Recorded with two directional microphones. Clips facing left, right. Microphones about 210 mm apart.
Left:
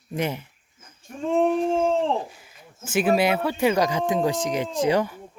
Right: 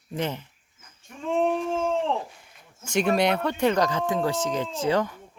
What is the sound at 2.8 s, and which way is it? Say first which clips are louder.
Speech: left 2 dB; 5° left (ahead or behind).